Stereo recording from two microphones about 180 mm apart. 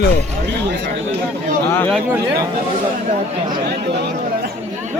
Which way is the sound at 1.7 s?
10° left (ahead or behind).